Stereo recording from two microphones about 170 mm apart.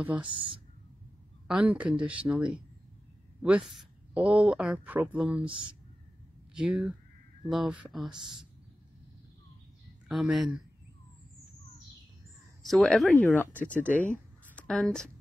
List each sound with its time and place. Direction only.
0.0 s a woman's voice: 10° right (ahead or behind)
0.3 s speech: 30° right (ahead or behind)
1.5 s a woman's voice: 10° right (ahead or behind)
6.5 s a woman's voice: 10° right (ahead or behind)
10.0 s speech: 5° right (ahead or behind)
12.6 s a woman's voice: centre (ahead or behind)